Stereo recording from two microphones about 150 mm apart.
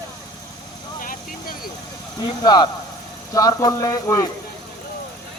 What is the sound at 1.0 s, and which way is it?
Vehicle, 70° left (ahead or behind).